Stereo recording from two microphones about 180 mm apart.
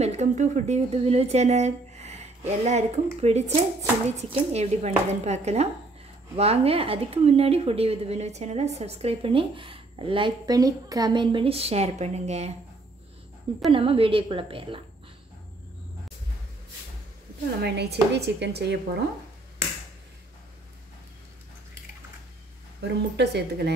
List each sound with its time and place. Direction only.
0.0 s a woman's voice: 40° right (ahead or behind)
13.7 s a woman's voice: 30° right (ahead or behind)
17.6 s speech: 65° right (ahead or behind)
22.8 s speech: 70° right (ahead or behind)